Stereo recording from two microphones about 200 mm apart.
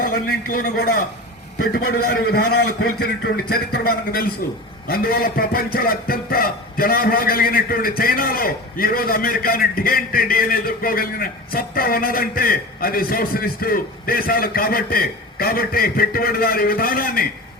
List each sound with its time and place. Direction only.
0.0 s a man's voice: 45° left (ahead or behind)